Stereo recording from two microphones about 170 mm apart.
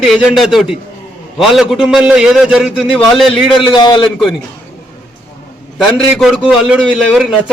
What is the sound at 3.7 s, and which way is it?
Speech, 30° left (ahead or behind).